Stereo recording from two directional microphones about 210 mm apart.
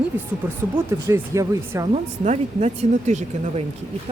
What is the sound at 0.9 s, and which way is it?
Speech, 15° right (ahead or behind).